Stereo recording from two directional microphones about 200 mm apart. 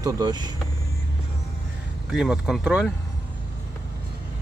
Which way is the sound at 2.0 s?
Centre (ahead or behind).